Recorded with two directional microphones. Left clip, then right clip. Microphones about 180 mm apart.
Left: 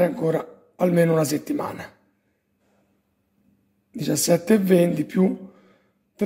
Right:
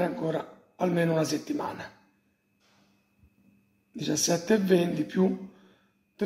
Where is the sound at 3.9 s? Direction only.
65° left (ahead or behind).